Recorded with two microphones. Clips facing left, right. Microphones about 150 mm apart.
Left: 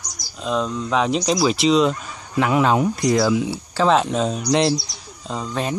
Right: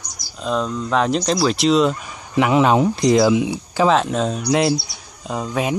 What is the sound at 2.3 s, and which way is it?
Speech, 20° right (ahead or behind).